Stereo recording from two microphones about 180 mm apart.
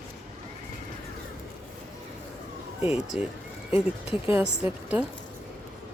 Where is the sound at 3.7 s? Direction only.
30° left (ahead or behind).